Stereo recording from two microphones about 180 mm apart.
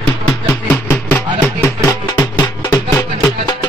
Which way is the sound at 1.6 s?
20° left (ahead or behind).